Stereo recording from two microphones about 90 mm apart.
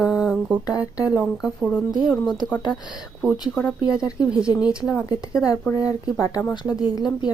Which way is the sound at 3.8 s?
10° right (ahead or behind).